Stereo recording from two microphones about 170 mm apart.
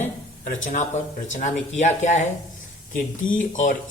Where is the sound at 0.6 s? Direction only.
45° left (ahead or behind).